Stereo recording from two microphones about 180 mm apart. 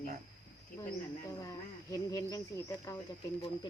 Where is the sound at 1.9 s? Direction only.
20° left (ahead or behind).